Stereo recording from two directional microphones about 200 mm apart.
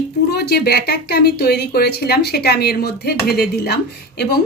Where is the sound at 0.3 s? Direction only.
55° left (ahead or behind).